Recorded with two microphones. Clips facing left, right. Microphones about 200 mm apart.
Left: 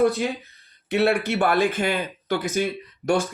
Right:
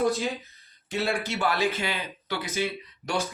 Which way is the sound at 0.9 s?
65° left (ahead or behind).